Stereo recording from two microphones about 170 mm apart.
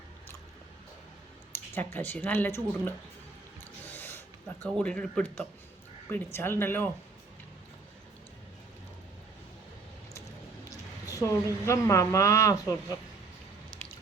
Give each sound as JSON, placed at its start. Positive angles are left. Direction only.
{"t": 1.5, "sound": "speech", "side_deg": 10}
{"t": 3.6, "sound": "rub", "side_deg": 10}
{"t": 4.8, "sound": "speech", "side_deg": 5}
{"t": 10.7, "sound": "a sound", "side_deg": 20}
{"t": 11.6, "sound": "speech", "side_deg": 15}
{"t": 13.8, "sound": "drip", "side_deg": 10}